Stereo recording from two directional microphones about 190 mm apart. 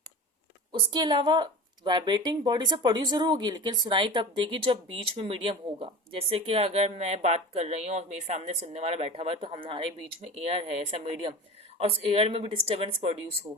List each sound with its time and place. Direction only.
0.7 s a woman's voice: 25° right (ahead or behind)